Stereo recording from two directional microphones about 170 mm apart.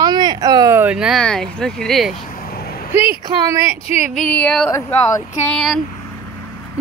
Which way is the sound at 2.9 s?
15° right (ahead or behind).